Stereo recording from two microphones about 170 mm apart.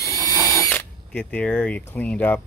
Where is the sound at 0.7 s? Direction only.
10° left (ahead or behind).